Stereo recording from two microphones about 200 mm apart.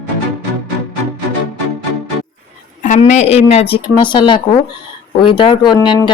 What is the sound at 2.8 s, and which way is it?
Speech, 35° left (ahead or behind).